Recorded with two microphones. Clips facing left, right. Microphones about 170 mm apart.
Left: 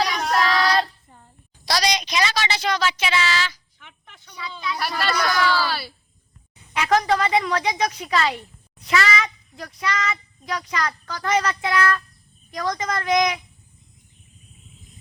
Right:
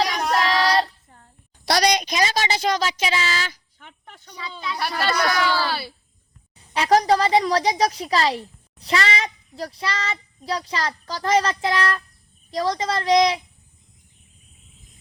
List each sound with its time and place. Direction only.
0.3 s child singing: 30° right (ahead or behind)
1.6 s a woman's voice: 55° right (ahead or behind); by 4.9 s 30° right (ahead or behind)
4.9 s a child's voice: 20° right (ahead or behind)
6.6 s a woman's voice: 35° right (ahead or behind)